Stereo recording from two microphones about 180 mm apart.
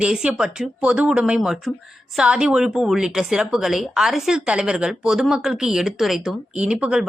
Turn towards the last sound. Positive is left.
turn(degrees=-5)  # may be behind; listen again after turning